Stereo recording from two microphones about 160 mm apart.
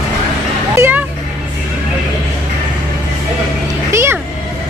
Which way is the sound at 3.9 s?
15° right (ahead or behind).